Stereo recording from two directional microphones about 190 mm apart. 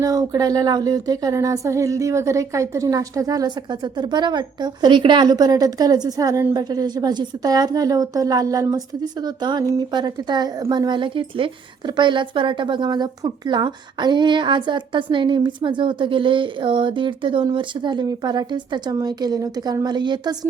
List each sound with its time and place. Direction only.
0.0 s a woman's voice: 20° right (ahead or behind)